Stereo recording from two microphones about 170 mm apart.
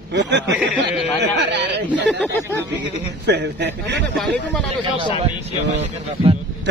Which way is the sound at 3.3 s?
85° right.